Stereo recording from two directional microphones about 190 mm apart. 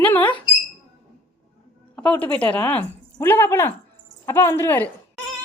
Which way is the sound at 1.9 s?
10° left (ahead or behind).